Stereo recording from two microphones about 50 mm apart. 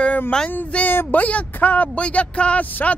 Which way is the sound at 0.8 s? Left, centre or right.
Left.